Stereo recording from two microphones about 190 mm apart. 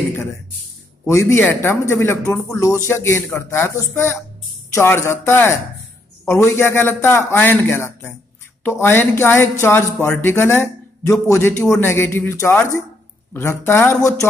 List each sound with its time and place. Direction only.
1.0 s a man's voice: 15° left (ahead or behind)